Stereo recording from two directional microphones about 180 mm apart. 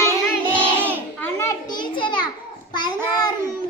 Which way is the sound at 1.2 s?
15° left (ahead or behind).